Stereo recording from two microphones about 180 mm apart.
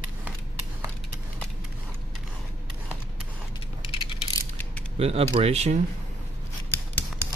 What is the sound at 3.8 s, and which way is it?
Mechanisms, 30° left (ahead or behind).